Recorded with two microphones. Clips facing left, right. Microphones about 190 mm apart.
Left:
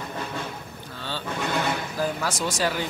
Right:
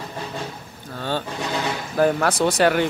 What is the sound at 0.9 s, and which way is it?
Vehicle, 50° right (ahead or behind).